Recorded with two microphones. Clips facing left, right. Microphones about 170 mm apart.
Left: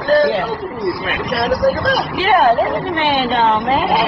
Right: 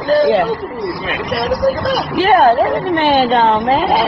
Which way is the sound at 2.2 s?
45° right (ahead or behind).